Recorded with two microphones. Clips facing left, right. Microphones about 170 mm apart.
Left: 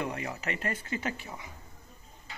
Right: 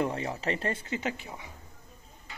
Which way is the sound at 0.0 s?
30° right (ahead or behind).